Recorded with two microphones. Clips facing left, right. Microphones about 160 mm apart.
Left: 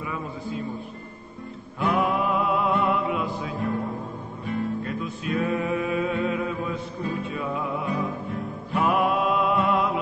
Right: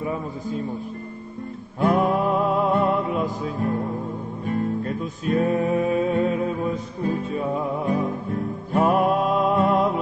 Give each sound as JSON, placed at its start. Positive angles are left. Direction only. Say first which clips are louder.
{"t": 0.0, "sound": "a man's voice", "louder": "right 4 dB", "side_deg": -40}
{"t": 1.8, "sound": "music", "louder": "right 4 dB", "side_deg": -40}
{"t": 3.5, "sound": "music", "louder": "right 2 dB", "side_deg": 0}
{"t": 4.5, "sound": "music", "louder": "right 3 dB", "side_deg": -45}